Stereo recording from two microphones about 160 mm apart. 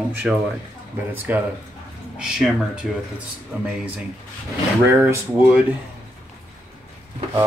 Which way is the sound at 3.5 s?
10° right (ahead or behind).